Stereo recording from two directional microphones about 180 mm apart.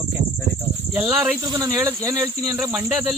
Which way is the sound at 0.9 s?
10° right (ahead or behind).